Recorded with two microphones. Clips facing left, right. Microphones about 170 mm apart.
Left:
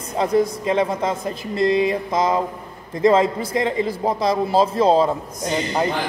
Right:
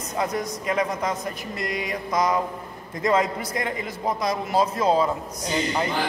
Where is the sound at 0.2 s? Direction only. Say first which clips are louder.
Left 8 dB; 25° left (ahead or behind).